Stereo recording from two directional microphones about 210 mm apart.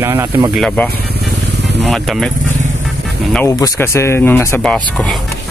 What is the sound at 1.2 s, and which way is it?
Vehicle, 55° right (ahead or behind).